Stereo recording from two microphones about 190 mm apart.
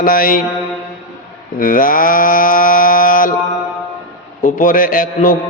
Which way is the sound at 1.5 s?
45° left (ahead or behind).